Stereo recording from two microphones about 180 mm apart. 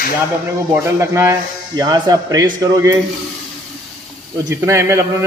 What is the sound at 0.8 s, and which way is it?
A man's voice, 15° right (ahead or behind).